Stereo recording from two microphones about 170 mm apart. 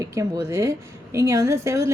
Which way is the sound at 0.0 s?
20° right (ahead or behind).